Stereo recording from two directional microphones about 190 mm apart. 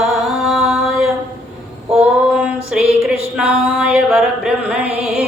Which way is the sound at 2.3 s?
5° right (ahead or behind).